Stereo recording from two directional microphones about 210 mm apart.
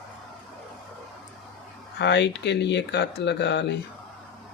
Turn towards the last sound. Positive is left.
turn(degrees=55)  # may be behind; listen again after turning